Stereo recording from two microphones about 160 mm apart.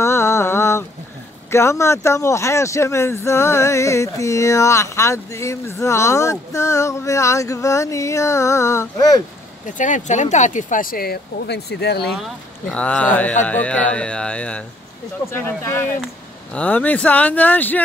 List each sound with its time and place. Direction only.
0.0 s a sound: 15° left (ahead or behind)
1.5 s speech: 15° left (ahead or behind)
9.8 s speech: 50° left (ahead or behind); by 12.1 s 90° left
12.2 s speech: 5° left (ahead or behind)